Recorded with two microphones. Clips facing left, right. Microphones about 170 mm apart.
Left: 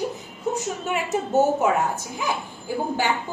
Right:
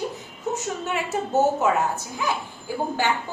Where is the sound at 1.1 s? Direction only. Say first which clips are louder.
Left 1 dB; 15° left (ahead or behind).